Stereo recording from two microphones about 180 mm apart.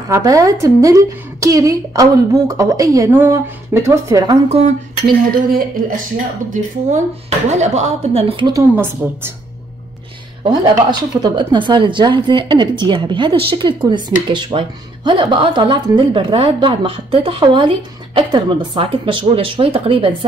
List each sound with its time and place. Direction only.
0.1 s a woman's voice: 20° right (ahead or behind)
4.5 s speech: 35° right (ahead or behind)
5.0 s speech: 55° right (ahead or behind)
6.5 s speech: 40° right (ahead or behind)
9.0 s a woman's voice: 10° right (ahead or behind)
10.4 s speech: 25° right (ahead or behind)